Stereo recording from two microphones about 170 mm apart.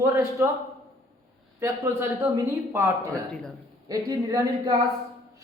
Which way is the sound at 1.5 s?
15° right (ahead or behind).